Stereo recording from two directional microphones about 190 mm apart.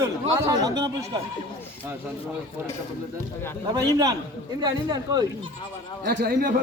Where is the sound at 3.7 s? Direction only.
20° right (ahead or behind).